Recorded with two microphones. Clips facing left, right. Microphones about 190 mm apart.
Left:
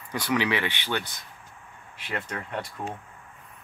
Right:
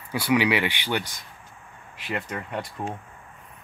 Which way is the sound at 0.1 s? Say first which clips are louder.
Right 4 dB; 10° right (ahead or behind).